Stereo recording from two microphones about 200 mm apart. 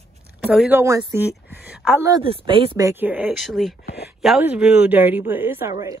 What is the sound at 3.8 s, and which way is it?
Speech, 55° left (ahead or behind).